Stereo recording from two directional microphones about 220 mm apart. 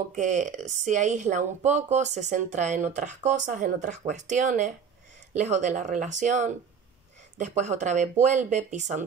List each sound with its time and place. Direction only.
0.1 s speech: 35° right (ahead or behind)